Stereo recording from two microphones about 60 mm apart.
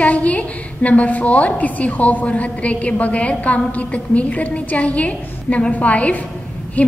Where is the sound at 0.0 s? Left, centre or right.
Left.